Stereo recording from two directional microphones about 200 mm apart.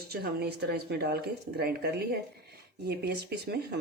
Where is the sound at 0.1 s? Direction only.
50° right (ahead or behind).